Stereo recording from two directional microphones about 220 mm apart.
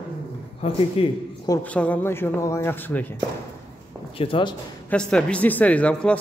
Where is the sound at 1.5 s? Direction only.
5° left (ahead or behind).